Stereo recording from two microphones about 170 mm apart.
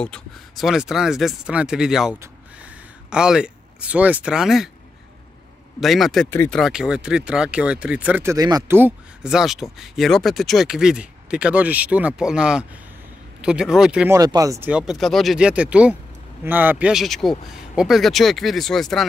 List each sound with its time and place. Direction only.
0.0 s speech: centre (ahead or behind)
2.1 s a sound: 5° right (ahead or behind)
5.8 s speech: centre (ahead or behind)
6.3 s speech: 15° left (ahead or behind)
6.6 s speech: 5° right (ahead or behind)
14.1 s speech: 20° right (ahead or behind)
14.7 s speech: 5° right (ahead or behind)